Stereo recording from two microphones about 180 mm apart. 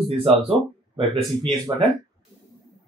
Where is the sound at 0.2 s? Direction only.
30° right (ahead or behind).